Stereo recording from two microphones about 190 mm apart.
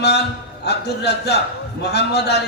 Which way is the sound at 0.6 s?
60° left (ahead or behind).